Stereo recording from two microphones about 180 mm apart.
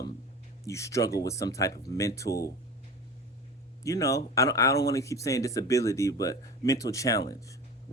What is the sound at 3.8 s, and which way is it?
Speech, 15° left (ahead or behind).